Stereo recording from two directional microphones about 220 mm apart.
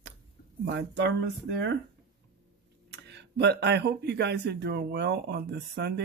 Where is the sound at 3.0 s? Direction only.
50° right (ahead or behind).